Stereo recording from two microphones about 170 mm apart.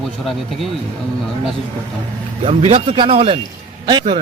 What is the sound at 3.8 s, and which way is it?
Speech, 25° right (ahead or behind).